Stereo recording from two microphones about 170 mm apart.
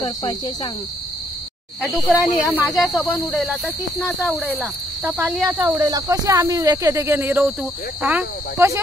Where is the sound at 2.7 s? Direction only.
Centre (ahead or behind).